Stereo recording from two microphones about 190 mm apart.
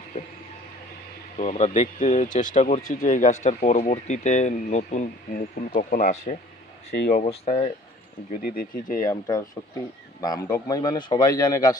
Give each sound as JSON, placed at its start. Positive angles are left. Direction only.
{"t": 1.4, "sound": "speech", "side_deg": 35}
{"t": 6.9, "sound": "speech", "side_deg": 60}
{"t": 7.2, "sound": "speech", "side_deg": 30}
{"t": 8.4, "sound": "speech", "side_deg": 50}
{"t": 9.0, "sound": "a man's voice", "side_deg": 20}